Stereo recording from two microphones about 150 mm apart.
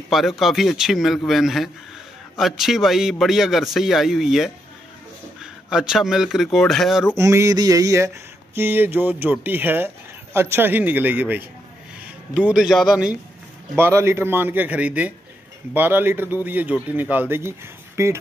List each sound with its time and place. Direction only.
0.1 s a man's voice: centre (ahead or behind)
7.2 s a sound: 20° right (ahead or behind)
8.5 s a man's voice: 15° right (ahead or behind)
13.7 s speech: 15° right (ahead or behind)